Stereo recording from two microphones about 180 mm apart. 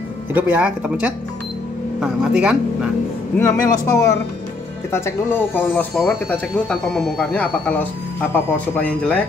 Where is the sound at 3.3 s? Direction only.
15° left (ahead or behind).